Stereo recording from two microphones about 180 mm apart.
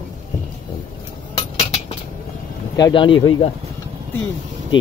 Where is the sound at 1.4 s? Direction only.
35° left (ahead or behind).